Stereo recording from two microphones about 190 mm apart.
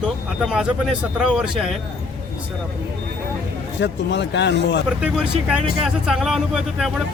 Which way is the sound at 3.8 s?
70° left (ahead or behind).